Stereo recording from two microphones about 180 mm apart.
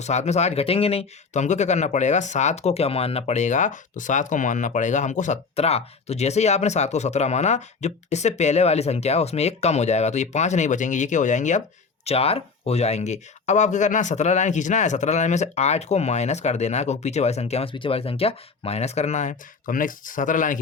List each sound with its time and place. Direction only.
0.0 s speech: 40° left (ahead or behind)